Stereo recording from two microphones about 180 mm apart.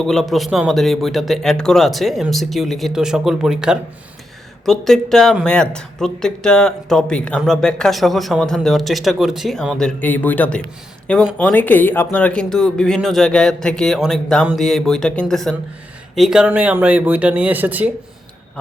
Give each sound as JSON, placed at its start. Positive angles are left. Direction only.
{"t": 0.0, "sound": "speech", "side_deg": 0}